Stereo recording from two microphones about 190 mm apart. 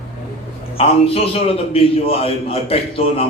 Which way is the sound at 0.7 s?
30° left (ahead or behind).